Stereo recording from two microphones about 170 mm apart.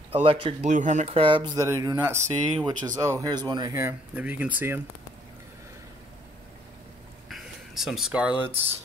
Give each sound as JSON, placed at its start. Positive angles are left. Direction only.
{"t": 0.1, "sound": "speech", "side_deg": -30}
{"t": 4.1, "sound": "speech", "side_deg": -10}
{"t": 7.2, "sound": "a sound", "side_deg": 0}